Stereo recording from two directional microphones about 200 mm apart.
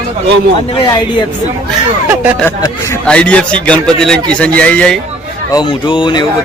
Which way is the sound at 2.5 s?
10° left (ahead or behind).